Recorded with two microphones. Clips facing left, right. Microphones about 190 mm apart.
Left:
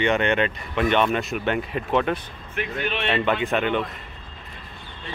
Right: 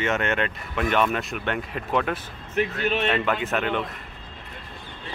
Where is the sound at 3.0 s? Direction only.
5° right (ahead or behind).